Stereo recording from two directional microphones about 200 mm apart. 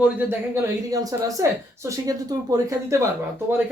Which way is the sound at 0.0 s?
10° right (ahead or behind).